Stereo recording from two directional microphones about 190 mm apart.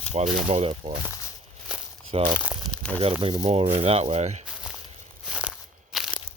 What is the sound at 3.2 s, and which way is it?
Speech, 20° right (ahead or behind).